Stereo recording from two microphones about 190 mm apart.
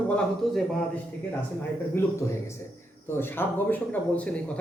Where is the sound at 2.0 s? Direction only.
15° left (ahead or behind).